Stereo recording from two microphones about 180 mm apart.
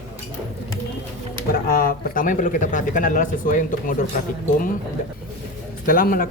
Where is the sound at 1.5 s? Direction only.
55° left (ahead or behind).